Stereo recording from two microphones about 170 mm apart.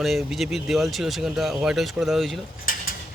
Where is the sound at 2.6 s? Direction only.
55° left (ahead or behind).